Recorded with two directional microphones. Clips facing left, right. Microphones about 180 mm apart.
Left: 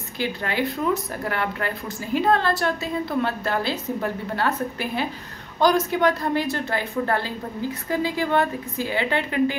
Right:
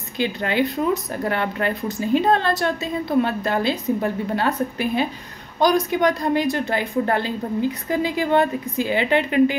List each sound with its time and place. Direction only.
0.2 s a woman's voice: 20° right (ahead or behind)